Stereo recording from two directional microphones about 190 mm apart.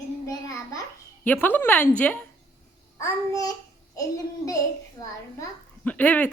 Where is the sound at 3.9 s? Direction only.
20° left (ahead or behind).